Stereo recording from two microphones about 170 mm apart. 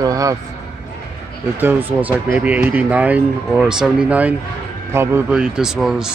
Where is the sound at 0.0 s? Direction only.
20° right (ahead or behind).